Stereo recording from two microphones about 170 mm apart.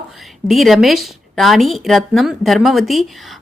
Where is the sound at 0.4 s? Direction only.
Centre (ahead or behind).